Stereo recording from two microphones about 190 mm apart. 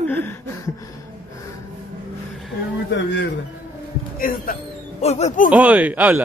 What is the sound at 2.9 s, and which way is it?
Speech, 70° left (ahead or behind).